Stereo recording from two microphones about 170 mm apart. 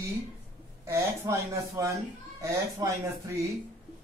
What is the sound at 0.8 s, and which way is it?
A woman's voice, 15° right (ahead or behind).